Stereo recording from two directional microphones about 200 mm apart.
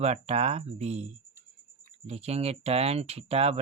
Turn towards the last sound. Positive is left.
turn(degrees=-30)  # may be behind; listen again after turning